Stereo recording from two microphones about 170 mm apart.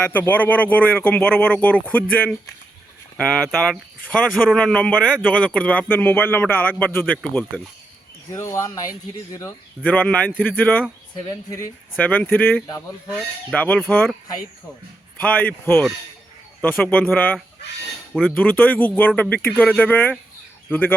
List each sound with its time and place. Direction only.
0.0 s speech: 10° left (ahead or behind)
8.3 s speech: 20° left (ahead or behind)
9.8 s speech: 10° left (ahead or behind)
15.2 s speech: 10° left (ahead or behind)